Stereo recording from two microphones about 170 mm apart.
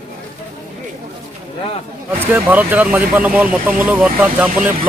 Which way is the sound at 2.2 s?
10° right (ahead or behind).